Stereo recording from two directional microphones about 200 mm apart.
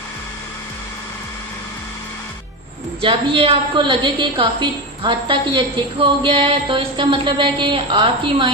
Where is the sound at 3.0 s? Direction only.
25° right (ahead or behind).